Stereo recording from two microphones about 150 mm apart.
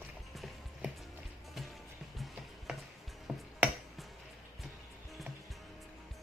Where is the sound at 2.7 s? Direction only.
5° right (ahead or behind).